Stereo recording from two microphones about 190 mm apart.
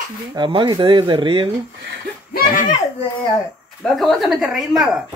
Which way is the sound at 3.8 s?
Centre (ahead or behind).